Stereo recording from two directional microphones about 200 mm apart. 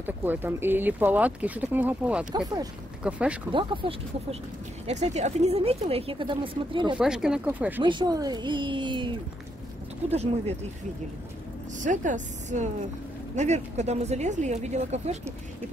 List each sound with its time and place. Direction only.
0.0 s speech: 10° right (ahead or behind)
2.3 s speech: 20° right (ahead or behind)
3.0 s speech: 5° right (ahead or behind)
3.5 s speech: 25° right (ahead or behind)
7.0 s speech: 5° right (ahead or behind)
7.8 s speech: 25° right (ahead or behind)
10.1 s speech: 30° right (ahead or behind)
11.8 s speech: 40° right (ahead or behind)